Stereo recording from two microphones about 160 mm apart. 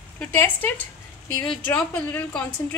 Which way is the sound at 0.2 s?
10° left (ahead or behind).